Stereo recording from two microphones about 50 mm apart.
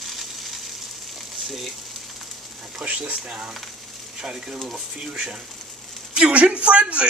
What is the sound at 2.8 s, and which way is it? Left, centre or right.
Speech, centre.